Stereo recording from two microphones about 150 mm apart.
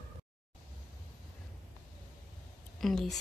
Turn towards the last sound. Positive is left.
turn(degrees=0)  # may be behind; listen again after turning